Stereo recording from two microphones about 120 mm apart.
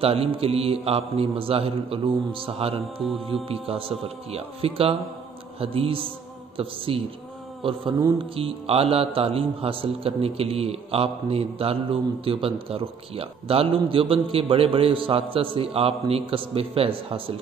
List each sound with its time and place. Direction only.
0.0 s a man's voice: 55° right (ahead or behind)
8.2 s a man's voice: 50° right (ahead or behind)